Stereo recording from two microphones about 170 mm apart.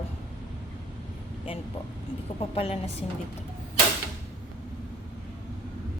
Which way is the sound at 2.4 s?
35° left (ahead or behind).